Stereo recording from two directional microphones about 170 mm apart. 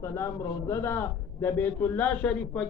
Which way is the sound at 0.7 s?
15° left (ahead or behind).